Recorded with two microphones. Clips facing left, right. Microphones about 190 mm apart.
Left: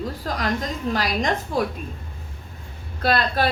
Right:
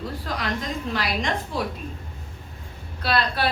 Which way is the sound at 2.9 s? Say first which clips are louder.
Left 3 dB; 45° left (ahead or behind).